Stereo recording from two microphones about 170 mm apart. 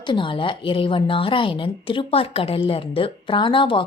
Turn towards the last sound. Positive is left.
turn(degrees=30)  # may be behind; listen again after turning